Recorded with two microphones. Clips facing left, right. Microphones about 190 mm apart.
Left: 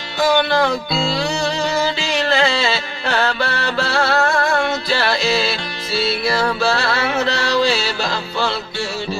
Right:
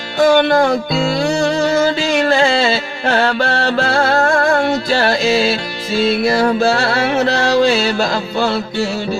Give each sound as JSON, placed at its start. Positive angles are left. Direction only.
{"t": 0.2, "sound": "music", "side_deg": -50}